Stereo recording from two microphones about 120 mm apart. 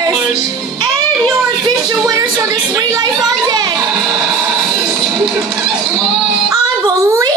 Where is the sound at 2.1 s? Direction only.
30° right (ahead or behind).